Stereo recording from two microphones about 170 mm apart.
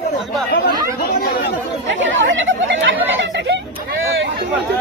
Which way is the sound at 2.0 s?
90° right.